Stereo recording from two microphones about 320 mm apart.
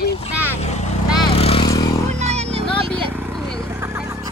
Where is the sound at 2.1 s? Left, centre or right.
Right.